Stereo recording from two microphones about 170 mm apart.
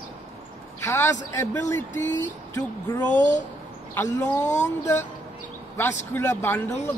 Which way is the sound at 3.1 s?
45° left (ahead or behind).